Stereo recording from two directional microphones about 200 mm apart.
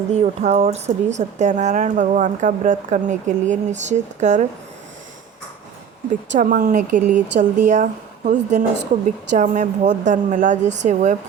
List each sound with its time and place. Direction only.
0.1 s speech: 35° right (ahead or behind)
6.3 s speech: 40° right (ahead or behind)